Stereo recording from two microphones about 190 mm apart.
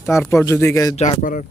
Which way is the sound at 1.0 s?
40° left (ahead or behind).